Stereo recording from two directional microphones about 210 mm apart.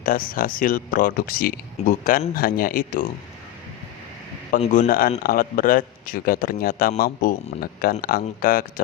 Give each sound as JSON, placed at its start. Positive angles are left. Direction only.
{"t": 0.0, "sound": "speech", "side_deg": 40}
{"t": 4.5, "sound": "a man's voice", "side_deg": 35}